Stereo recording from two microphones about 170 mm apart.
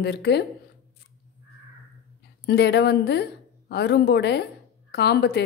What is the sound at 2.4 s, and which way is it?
A woman's voice, 75° left (ahead or behind).